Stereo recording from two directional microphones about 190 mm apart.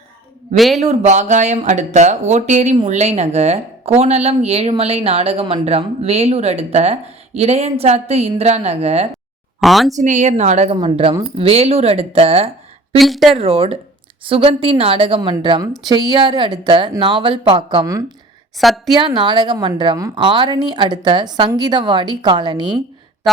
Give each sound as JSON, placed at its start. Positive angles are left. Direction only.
{"t": 0.5, "sound": "a woman's voice", "side_deg": 0}
{"t": 0.8, "sound": "a woman's voice", "side_deg": -35}
{"t": 9.6, "sound": "speech", "side_deg": 0}
{"t": 10.0, "sound": "a woman's voice", "side_deg": -40}
{"t": 13.0, "sound": "a woman's voice", "side_deg": 0}
{"t": 13.3, "sound": "a woman's voice", "side_deg": -30}
{"t": 18.5, "sound": "a woman's voice", "side_deg": 0}
{"t": 18.9, "sound": "a woman's voice", "side_deg": -25}
{"t": 23.3, "sound": "music", "side_deg": 0}